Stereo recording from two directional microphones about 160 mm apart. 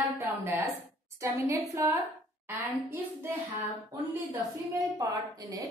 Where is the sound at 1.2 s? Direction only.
20° right (ahead or behind).